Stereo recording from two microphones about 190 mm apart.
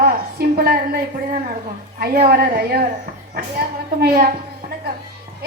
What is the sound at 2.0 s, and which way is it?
Speech, 55° right (ahead or behind).